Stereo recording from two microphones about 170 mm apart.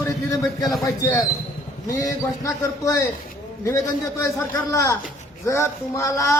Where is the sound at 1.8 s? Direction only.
20° left (ahead or behind).